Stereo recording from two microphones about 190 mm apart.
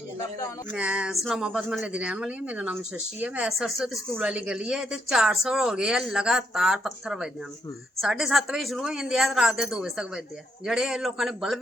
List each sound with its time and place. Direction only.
0.7 s a woman's voice: 5° right (ahead or behind)